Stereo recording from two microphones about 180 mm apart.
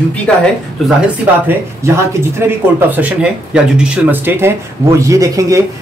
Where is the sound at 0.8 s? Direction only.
10° right (ahead or behind).